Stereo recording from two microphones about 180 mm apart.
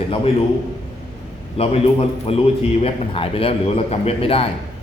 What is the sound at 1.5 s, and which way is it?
A man's voice, 35° left (ahead or behind).